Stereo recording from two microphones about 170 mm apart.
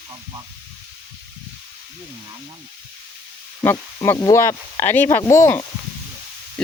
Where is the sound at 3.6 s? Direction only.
15° left (ahead or behind).